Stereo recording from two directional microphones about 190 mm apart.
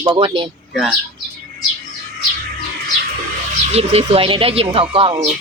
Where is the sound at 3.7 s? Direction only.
35° right (ahead or behind).